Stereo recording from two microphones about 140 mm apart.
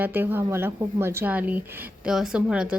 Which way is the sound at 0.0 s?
15° right (ahead or behind).